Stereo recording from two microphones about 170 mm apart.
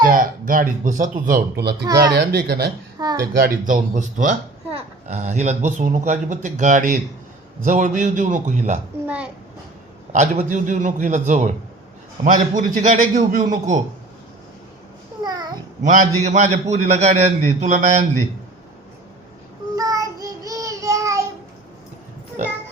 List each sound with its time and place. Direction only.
0.0 s a man's voice: 55° right (ahead or behind)
1.8 s speech: 20° right (ahead or behind)
2.1 s speech: 70° right (ahead or behind)
3.0 s a sound: 20° right (ahead or behind)
3.3 s a man's voice: 55° right (ahead or behind)
9.0 s a sound: 10° right (ahead or behind)
10.1 s a man's voice: 45° right (ahead or behind)
15.2 s babbling: 25° right (ahead or behind)
15.8 s a man's voice: 50° right (ahead or behind)
19.7 s child singing: 20° right (ahead or behind)